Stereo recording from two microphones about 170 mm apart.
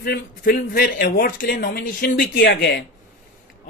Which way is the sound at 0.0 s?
65° left (ahead or behind).